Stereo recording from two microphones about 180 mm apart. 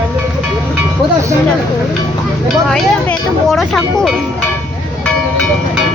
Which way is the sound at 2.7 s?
Centre (ahead or behind).